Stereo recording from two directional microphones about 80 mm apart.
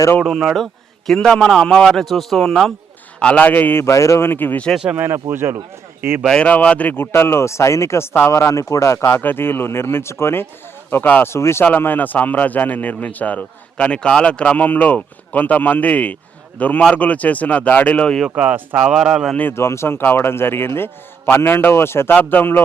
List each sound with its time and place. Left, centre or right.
0.2 s a man's voice: centre
3.2 s a man's voice: centre
4.9 s speech: right
6.2 s speech: centre
6.5 s a man's voice: centre
18.3 s speech: centre
19.4 s a man's voice: left